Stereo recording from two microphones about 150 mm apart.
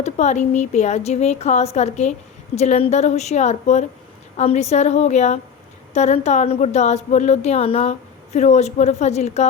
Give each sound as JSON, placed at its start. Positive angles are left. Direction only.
{"t": 0.0, "sound": "speech", "side_deg": 50}